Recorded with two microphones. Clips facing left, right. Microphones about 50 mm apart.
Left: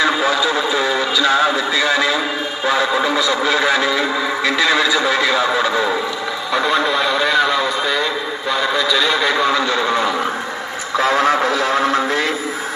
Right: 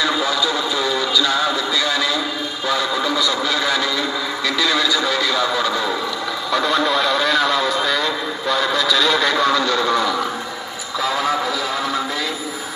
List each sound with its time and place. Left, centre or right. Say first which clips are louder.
0.0 s radio: left 3 dB; left
2.6 s music: left 4 dB; left
6.5 s a sound: left 1 dB; centre; by 10.2 s left
11.0 s music: left 5 dB; left